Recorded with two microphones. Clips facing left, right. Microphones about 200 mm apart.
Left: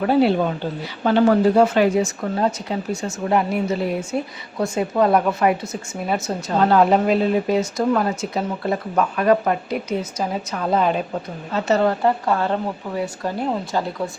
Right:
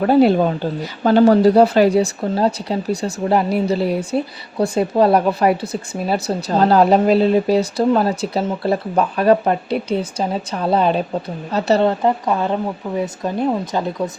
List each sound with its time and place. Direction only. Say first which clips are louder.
0.0 s speech: right 4 dB; 45° right (ahead or behind)
11.9 s a woman's voice: right 2 dB; 20° right (ahead or behind)